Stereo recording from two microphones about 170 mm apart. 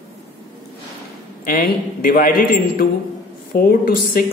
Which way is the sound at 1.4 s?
55° left (ahead or behind).